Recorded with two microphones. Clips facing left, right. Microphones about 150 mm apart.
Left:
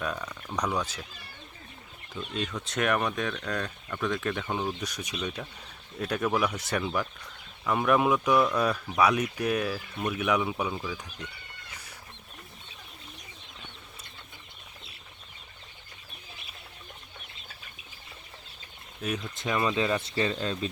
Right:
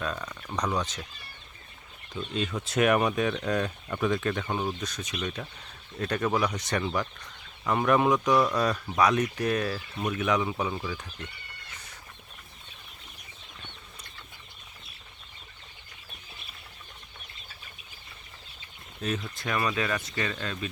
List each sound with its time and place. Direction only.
0.0 s speech: 10° left (ahead or behind)
2.2 s speech: centre (ahead or behind)
4.1 s speech: centre (ahead or behind)
4.8 s speech: 10° left (ahead or behind)
19.0 s speech: 5° left (ahead or behind)
19.4 s speech: 20° left (ahead or behind)